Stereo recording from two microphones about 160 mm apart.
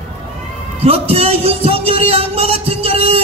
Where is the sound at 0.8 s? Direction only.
40° right (ahead or behind).